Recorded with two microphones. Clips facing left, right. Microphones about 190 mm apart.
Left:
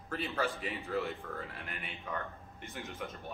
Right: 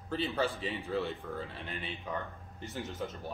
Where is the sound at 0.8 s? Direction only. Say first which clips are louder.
Even; 25° right (ahead or behind).